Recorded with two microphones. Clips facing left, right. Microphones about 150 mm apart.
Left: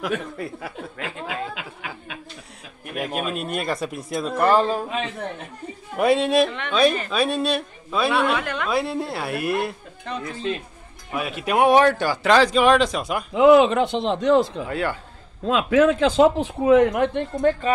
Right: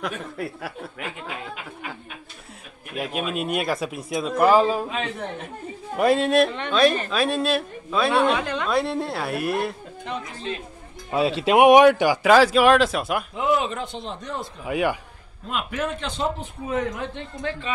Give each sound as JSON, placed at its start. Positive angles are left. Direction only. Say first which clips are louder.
{"t": 0.0, "sound": "speech", "louder": "left 3 dB", "side_deg": -5}
{"t": 1.2, "sound": "speech", "louder": "left 4 dB", "side_deg": 90}
{"t": 3.2, "sound": "speech", "louder": "right 3 dB", "side_deg": -5}
{"t": 8.1, "sound": "speech", "louder": "right 3 dB", "side_deg": -25}
{"t": 8.6, "sound": "speech", "louder": "even", "side_deg": 0}
{"t": 11.1, "sound": "speech", "louder": "right 5 dB", "side_deg": -30}
{"t": 13.3, "sound": "speech", "louder": "left 13 dB", "side_deg": 90}
{"t": 14.7, "sound": "speech", "louder": "right 2 dB", "side_deg": -15}
{"t": 15.4, "sound": "a man's voice", "louder": "left 11 dB", "side_deg": 90}
{"t": 17.4, "sound": "a woman's voice", "louder": "left 9 dB", "side_deg": 45}